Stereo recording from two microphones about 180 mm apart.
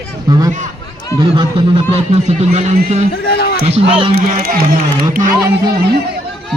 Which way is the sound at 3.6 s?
30° right (ahead or behind).